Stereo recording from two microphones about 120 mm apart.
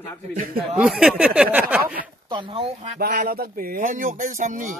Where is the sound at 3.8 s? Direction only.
90° right.